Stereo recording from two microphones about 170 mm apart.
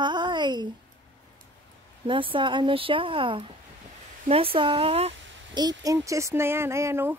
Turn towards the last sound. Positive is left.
turn(degrees=-15)  # may be behind; listen again after turning